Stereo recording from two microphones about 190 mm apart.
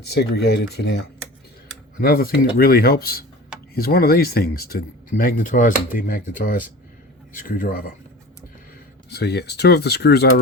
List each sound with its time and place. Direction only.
0.0 s speech: 60° left (ahead or behind)
9.0 s speech: 60° left (ahead or behind)